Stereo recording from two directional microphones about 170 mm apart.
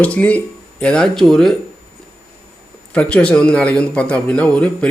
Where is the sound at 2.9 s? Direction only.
5° left (ahead or behind).